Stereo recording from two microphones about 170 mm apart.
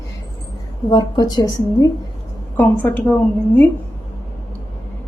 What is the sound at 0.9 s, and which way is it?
Speech, 25° left (ahead or behind).